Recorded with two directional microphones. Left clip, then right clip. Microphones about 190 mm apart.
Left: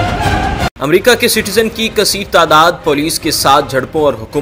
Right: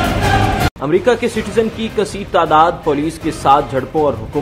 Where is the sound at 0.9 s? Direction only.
20° left (ahead or behind).